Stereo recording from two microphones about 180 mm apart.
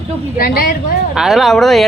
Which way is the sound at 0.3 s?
55° left (ahead or behind).